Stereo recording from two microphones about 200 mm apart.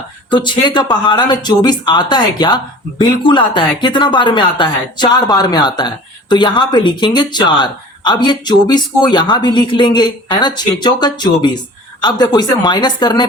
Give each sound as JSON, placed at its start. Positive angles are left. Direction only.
{"t": 0.3, "sound": "speech", "side_deg": 20}